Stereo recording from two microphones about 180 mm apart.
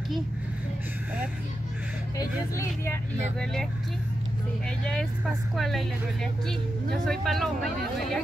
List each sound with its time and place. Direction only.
2.1 s speech: 15° left (ahead or behind)
4.6 s speech: 5° left (ahead or behind)
6.9 s speech: centre (ahead or behind)